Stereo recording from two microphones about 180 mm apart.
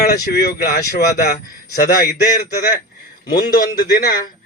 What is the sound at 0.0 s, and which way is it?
A man's voice, 60° left (ahead or behind).